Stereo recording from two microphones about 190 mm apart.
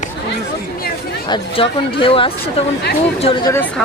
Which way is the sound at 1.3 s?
25° left (ahead or behind).